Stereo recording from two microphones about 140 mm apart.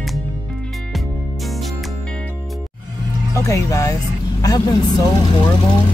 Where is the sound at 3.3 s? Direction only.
20° left (ahead or behind).